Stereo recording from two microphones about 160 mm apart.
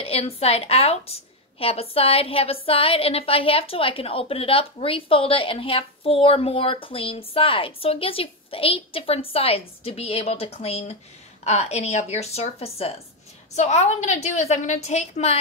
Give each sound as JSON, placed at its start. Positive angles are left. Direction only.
{"t": 0.0, "sound": "a woman's voice", "side_deg": 40}